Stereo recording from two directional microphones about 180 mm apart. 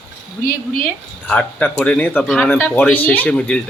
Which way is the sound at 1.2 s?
5° left (ahead or behind).